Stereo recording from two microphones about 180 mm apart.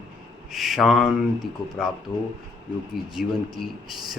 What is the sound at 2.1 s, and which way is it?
Speech, 30° left (ahead or behind).